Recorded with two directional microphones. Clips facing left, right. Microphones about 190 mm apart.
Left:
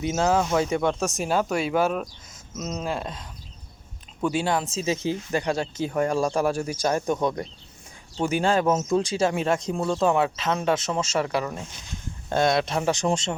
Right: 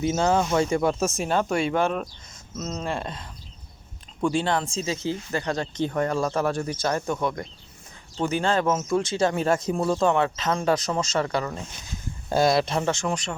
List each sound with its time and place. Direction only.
0.0 s speech: centre (ahead or behind)
4.9 s speech: 15° left (ahead or behind); by 10.1 s centre (ahead or behind)
10.1 s speech: 10° left (ahead or behind)
12.9 s speech: 20° left (ahead or behind)